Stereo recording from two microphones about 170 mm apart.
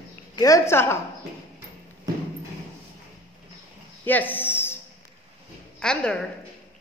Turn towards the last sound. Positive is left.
turn(degrees=5)  # may be behind; listen again after turning